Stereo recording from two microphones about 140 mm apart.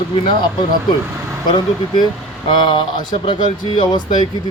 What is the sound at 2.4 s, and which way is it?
A man's voice, 35° left (ahead or behind).